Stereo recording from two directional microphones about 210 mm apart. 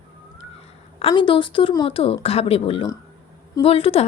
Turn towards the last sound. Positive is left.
turn(degrees=25)  # may be behind; listen again after turning